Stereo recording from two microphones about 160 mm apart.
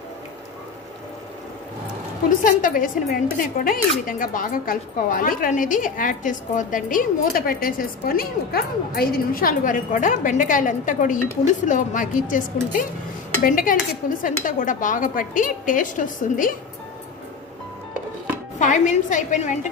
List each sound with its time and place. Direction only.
2.2 s a woman's voice: 55° left (ahead or behind)
18.6 s a woman's voice: 50° left (ahead or behind)